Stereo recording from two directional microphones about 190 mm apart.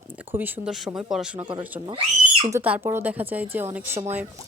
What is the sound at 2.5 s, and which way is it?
Speech, 10° right (ahead or behind).